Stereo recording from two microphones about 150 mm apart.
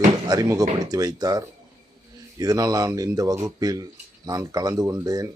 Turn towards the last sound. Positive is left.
turn(degrees=-25)  # may be behind; listen again after turning